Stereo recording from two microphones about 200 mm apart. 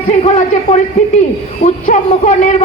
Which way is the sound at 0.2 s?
35° left (ahead or behind).